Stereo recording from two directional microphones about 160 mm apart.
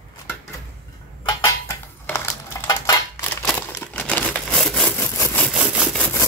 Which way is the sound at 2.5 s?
20° left (ahead or behind).